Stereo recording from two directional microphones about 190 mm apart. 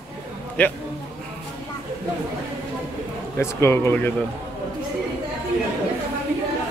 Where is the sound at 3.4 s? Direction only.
15° left (ahead or behind).